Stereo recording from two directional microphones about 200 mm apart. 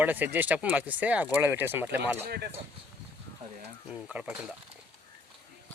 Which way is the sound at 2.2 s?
50° right (ahead or behind).